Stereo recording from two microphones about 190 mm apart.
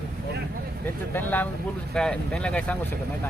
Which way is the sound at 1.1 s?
10° left (ahead or behind).